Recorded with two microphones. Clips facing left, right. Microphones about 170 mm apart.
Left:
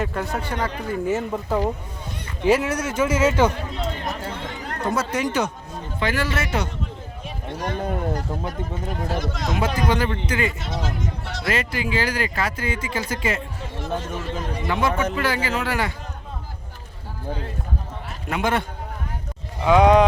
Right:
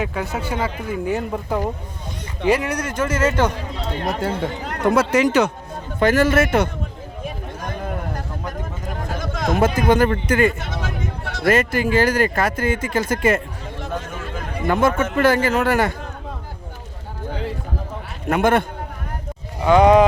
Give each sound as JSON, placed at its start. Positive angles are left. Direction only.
{"t": 0.0, "sound": "speech", "side_deg": 0}
{"t": 3.8, "sound": "speech", "side_deg": -70}
{"t": 6.0, "sound": "speech", "side_deg": -45}
{"t": 9.0, "sound": "speech", "side_deg": -50}
{"t": 14.6, "sound": "speech", "side_deg": -50}
{"t": 18.3, "sound": "speech", "side_deg": -50}
{"t": 19.6, "sound": "speech", "side_deg": 0}